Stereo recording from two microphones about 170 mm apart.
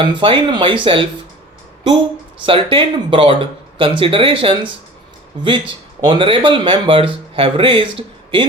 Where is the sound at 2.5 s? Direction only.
30° right (ahead or behind).